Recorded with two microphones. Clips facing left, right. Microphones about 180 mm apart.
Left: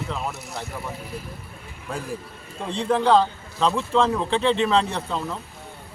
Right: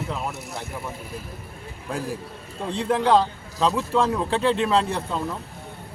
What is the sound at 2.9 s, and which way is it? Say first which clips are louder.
Speech: left 1 dB; 10° right (ahead or behind).